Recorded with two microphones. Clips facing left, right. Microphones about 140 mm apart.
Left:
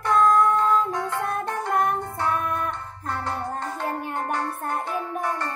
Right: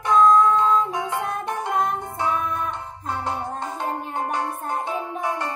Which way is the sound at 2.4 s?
60° left (ahead or behind).